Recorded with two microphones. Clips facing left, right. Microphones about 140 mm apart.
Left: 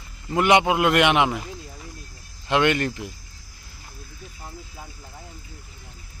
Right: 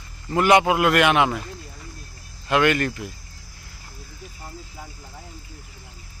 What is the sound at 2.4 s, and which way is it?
Speech, 25° left (ahead or behind).